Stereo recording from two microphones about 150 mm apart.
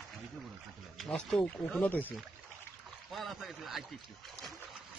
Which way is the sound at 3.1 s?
Centre (ahead or behind).